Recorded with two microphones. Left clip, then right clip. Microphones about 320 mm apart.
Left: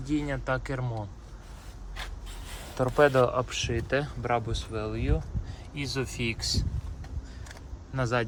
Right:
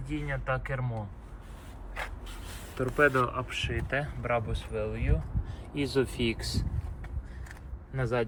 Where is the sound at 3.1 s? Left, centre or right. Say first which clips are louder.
Left 5 dB; centre.